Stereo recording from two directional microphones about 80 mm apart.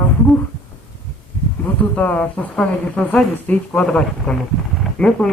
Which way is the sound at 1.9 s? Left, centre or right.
Centre.